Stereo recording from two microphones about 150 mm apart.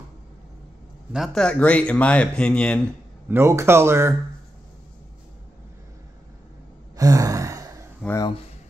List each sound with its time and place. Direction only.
1.1 s speech: centre (ahead or behind)
3.3 s speech: 15° right (ahead or behind)
7.0 s sigh: 25° right (ahead or behind)